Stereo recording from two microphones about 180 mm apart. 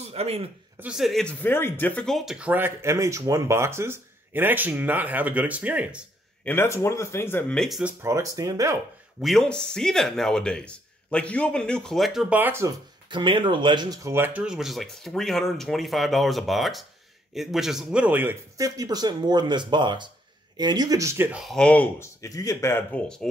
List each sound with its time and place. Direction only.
0.0 s a man's voice: 35° right (ahead or behind)
0.7 s speech: 5° right (ahead or behind)
6.4 s speech: 10° left (ahead or behind)
8.0 s speech: 20° right (ahead or behind)
9.2 s speech: centre (ahead or behind)
13.1 s speech: 30° right (ahead or behind)
21.5 s speech: 5° left (ahead or behind)